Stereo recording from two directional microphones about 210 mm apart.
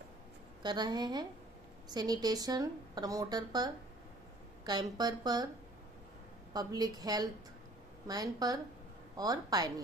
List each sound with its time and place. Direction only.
0.6 s speech: 20° right (ahead or behind)
6.5 s a woman's voice: 20° right (ahead or behind)